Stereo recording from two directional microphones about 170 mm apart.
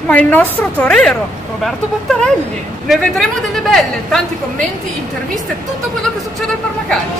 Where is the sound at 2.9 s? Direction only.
Centre (ahead or behind).